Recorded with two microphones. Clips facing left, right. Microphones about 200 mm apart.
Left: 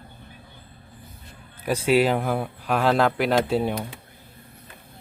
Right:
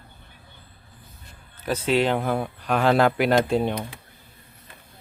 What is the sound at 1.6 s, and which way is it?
Speech, 10° left (ahead or behind).